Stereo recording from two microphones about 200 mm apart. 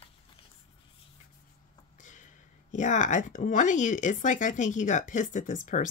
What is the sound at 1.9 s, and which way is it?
Speech, 40° left (ahead or behind).